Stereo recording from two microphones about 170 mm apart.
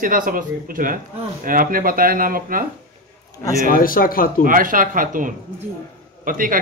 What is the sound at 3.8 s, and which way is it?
Speech, 55° left (ahead or behind).